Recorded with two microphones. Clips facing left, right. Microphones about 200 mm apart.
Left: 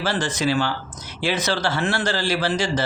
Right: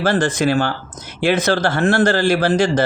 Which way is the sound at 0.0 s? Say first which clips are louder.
Right 6 dB; 50° right (ahead or behind).